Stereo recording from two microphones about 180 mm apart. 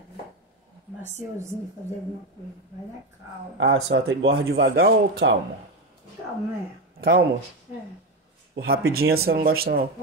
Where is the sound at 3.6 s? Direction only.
90° right; by 5.4 s 65° right (ahead or behind).